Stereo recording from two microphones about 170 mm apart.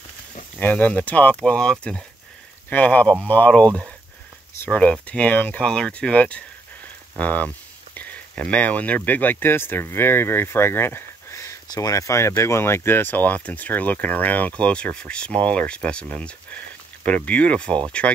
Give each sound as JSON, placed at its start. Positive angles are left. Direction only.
{"t": 0.6, "sound": "speech", "side_deg": 10}